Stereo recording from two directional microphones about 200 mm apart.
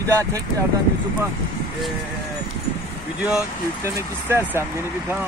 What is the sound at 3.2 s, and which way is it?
Speech, 10° right (ahead or behind).